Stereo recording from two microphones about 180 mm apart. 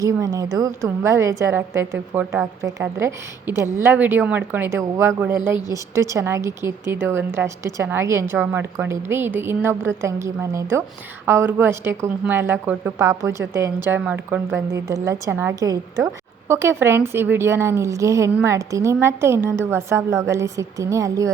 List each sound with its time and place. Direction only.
0.0 s a woman's voice: 20° right (ahead or behind)